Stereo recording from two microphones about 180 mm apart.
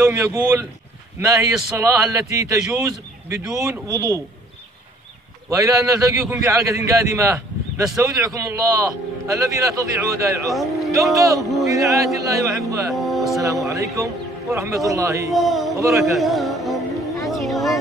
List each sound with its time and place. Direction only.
0.0 s a man's voice: 15° right (ahead or behind)
5.6 s a man's voice: 20° right (ahead or behind)
10.5 s speech: centre (ahead or behind)
11.1 s a man's voice: 15° right (ahead or behind)
12.9 s speech: centre (ahead or behind)
13.7 s a man's voice: 15° right (ahead or behind)
15.3 s speech: centre (ahead or behind)
15.7 s a man's voice: 15° right (ahead or behind)
16.0 s music: centre (ahead or behind)